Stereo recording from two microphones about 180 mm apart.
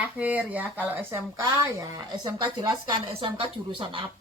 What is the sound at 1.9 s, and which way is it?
Speech, 25° right (ahead or behind).